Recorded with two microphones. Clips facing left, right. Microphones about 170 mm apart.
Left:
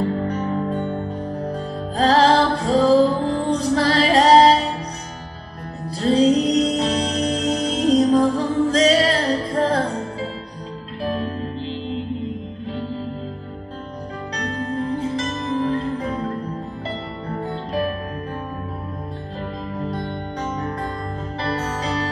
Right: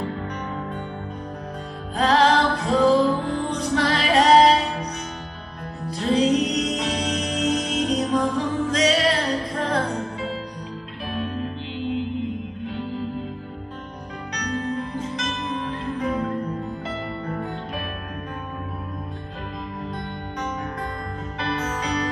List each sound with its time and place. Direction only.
0.3 s music: 35° left (ahead or behind)
2.0 s music: 35° left (ahead or behind)
5.9 s music: 35° left (ahead or behind)
14.3 s music: 35° left (ahead or behind)
17.3 s music: 35° left (ahead or behind)
19.8 s music: 30° left (ahead or behind)
21.4 s music: 35° left (ahead or behind)